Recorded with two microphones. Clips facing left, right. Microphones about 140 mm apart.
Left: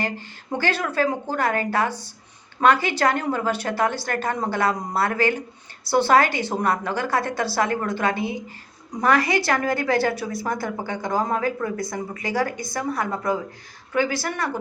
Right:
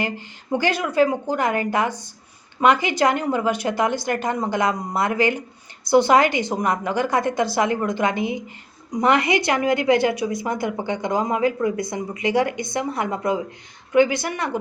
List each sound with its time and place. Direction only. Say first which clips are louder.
0.0 s a woman's voice: right 2 dB; 15° right (ahead or behind)